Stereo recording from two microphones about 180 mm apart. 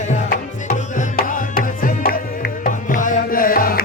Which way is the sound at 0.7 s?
45° left (ahead or behind).